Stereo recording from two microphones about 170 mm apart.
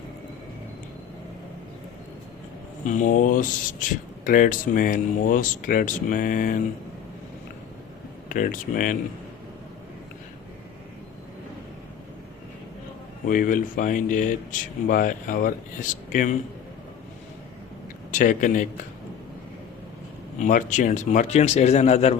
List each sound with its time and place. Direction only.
2.8 s speech: 50° left (ahead or behind)
8.3 s speech: 50° left (ahead or behind)
13.2 s speech: 55° left (ahead or behind)
18.1 s speech: 50° left (ahead or behind)
20.4 s speech: 50° left (ahead or behind)